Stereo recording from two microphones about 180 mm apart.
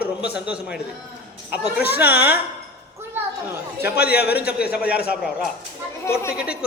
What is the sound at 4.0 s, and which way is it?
Speech, 60° left (ahead or behind).